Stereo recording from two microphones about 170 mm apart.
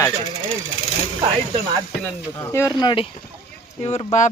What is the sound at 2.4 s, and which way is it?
Speech, 15° left (ahead or behind).